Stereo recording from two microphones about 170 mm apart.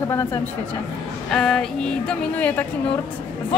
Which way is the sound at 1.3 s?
5° left (ahead or behind).